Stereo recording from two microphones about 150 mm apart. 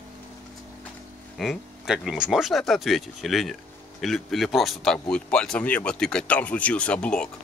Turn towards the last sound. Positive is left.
turn(degrees=5)  # may be behind; listen again after turning